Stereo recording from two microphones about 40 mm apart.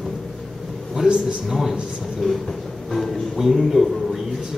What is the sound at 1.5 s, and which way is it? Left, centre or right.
Speech, centre.